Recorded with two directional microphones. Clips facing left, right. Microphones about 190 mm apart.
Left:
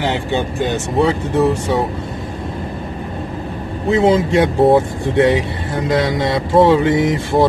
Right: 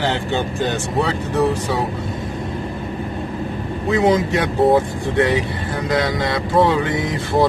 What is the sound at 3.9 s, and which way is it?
Speech, 25° left (ahead or behind).